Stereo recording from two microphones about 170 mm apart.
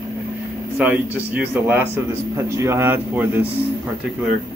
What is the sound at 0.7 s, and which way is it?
A man's voice, 10° right (ahead or behind).